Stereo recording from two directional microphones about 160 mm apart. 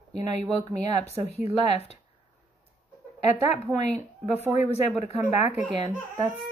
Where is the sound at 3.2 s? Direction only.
45° left (ahead or behind).